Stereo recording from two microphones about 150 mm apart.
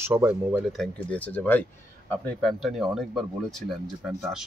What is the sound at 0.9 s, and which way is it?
Speech, 10° left (ahead or behind).